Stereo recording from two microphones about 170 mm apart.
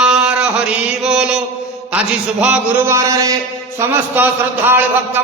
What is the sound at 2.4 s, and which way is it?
Speech, 10° right (ahead or behind).